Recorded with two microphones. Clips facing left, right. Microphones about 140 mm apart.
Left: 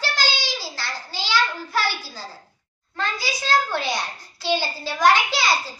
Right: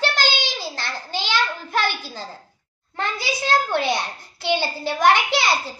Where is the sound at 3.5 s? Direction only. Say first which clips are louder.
Right 2 dB; 60° right (ahead or behind).